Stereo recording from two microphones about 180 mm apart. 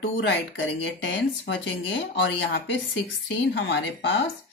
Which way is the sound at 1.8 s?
80° left.